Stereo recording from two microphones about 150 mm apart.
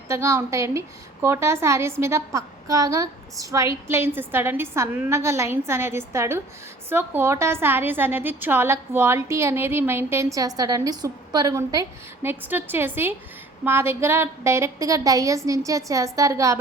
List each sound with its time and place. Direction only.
0.1 s a woman's voice: 20° right (ahead or behind)